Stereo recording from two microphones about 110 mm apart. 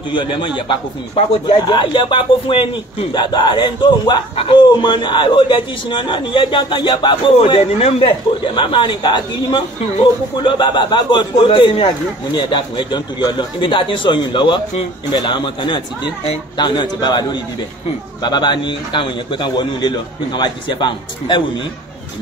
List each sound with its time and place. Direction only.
0.1 s a man's voice: 45° left (ahead or behind)
3.1 s a man's voice: 45° left (ahead or behind)